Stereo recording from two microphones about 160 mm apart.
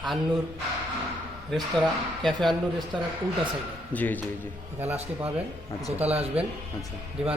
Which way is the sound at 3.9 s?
10° left (ahead or behind).